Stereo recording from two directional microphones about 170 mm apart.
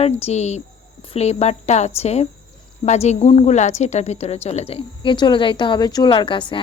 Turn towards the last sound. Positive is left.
turn(degrees=30)  # may be behind; listen again after turning